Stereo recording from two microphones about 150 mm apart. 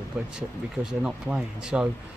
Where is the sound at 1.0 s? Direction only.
5° right (ahead or behind).